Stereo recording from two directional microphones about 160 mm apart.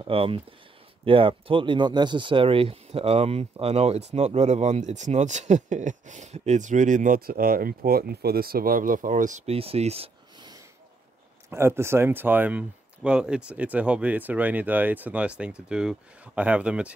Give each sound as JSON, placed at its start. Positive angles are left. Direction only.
{"t": 0.0, "sound": "speech", "side_deg": -35}
{"t": 9.5, "sound": "speech", "side_deg": -40}
{"t": 11.5, "sound": "speech", "side_deg": -15}